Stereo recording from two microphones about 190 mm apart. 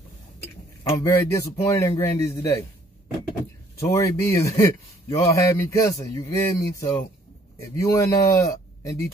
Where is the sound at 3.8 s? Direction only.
15° left (ahead or behind).